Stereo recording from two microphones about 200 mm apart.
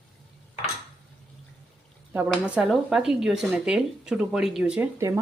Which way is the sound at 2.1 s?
10° right (ahead or behind).